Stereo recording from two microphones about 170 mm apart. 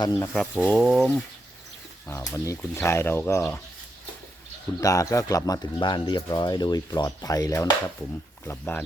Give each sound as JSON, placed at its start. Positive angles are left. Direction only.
{"t": 0.2, "sound": "speech", "side_deg": 10}
{"t": 4.8, "sound": "speech", "side_deg": 20}